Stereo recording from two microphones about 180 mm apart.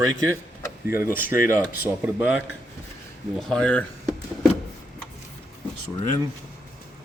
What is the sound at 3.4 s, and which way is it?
Speech, 5° left (ahead or behind).